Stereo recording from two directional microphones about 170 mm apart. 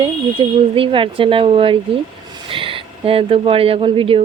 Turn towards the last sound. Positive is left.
turn(degrees=-30)  # may be behind; listen again after turning